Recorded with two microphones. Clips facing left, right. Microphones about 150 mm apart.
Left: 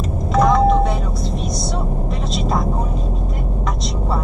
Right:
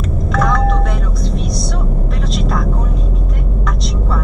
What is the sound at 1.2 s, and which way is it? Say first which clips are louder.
Vehicle: right 2 dB; centre (ahead or behind).